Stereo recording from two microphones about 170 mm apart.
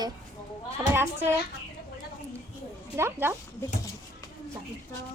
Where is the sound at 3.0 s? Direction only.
15° right (ahead or behind).